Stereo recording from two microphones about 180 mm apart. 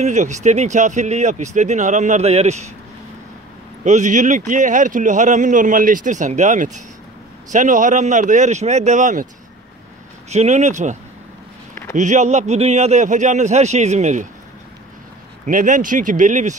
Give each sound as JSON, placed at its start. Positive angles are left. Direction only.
{"t": 0.0, "sound": "speech", "side_deg": -40}
{"t": 3.8, "sound": "speech", "side_deg": -40}
{"t": 10.3, "sound": "speech", "side_deg": -40}
{"t": 15.4, "sound": "speech", "side_deg": -45}